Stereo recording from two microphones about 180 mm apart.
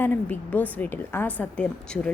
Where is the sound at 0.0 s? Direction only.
10° left (ahead or behind).